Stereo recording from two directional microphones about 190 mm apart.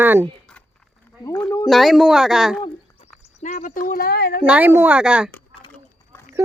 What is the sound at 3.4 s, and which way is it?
Speech, 40° left (ahead or behind).